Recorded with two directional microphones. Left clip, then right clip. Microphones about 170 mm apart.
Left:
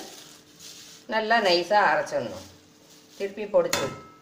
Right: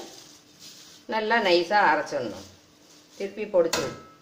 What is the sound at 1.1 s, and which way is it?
Speech, 30° right (ahead or behind).